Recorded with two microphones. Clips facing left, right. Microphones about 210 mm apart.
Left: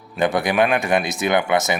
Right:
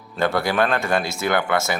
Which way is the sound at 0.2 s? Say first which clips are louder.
Left 2 dB; 15° left (ahead or behind).